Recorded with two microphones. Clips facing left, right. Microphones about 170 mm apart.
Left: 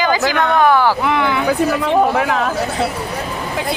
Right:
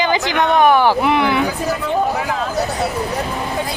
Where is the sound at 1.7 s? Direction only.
70° left (ahead or behind).